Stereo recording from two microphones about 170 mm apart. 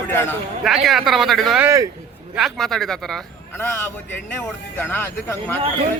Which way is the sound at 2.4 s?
Centre (ahead or behind).